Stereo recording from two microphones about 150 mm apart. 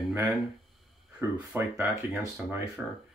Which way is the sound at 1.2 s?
15° right (ahead or behind).